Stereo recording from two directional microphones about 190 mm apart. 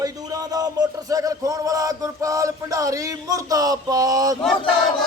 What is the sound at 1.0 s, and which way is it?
Music, 20° right (ahead or behind).